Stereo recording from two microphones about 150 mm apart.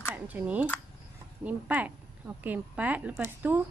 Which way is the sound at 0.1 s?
10° right (ahead or behind).